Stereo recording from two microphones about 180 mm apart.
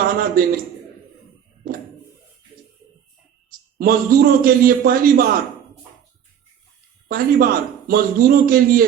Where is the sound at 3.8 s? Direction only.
55° right (ahead or behind).